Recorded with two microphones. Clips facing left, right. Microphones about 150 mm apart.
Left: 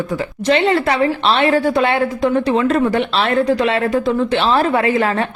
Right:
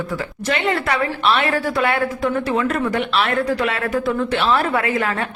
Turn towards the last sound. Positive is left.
turn(degrees=25)  # may be behind; listen again after turning